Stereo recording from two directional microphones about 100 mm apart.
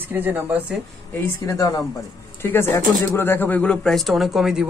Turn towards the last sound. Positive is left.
turn(degrees=-5)  # may be behind; listen again after turning